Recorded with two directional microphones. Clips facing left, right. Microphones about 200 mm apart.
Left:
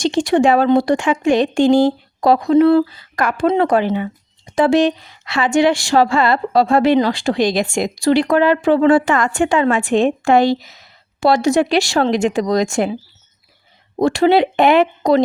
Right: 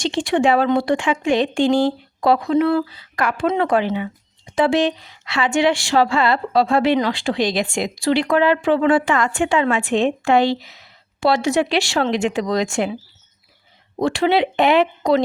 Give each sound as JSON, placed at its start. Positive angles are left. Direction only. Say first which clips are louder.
{"t": 0.0, "sound": "speech", "louder": "left 4 dB", "side_deg": 40}
{"t": 14.0, "sound": "speech", "louder": "left 4 dB", "side_deg": 40}